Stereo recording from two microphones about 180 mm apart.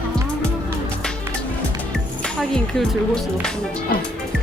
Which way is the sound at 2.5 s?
5° left (ahead or behind).